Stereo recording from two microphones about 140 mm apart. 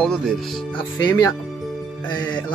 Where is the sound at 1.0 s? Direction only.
25° left (ahead or behind).